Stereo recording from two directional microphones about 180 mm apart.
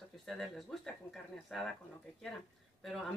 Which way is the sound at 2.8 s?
Centre (ahead or behind).